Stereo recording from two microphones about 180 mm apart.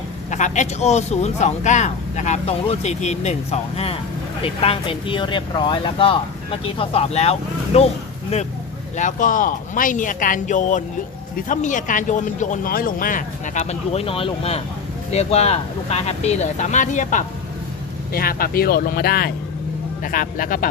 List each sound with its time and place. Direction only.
0.3 s speech: 40° left (ahead or behind)
9.0 s speech: 45° left (ahead or behind)